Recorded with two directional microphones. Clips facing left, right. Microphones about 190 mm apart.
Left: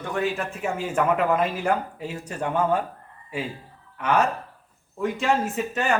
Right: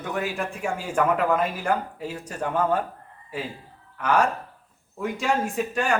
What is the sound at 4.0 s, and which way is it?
Speech, 5° left (ahead or behind).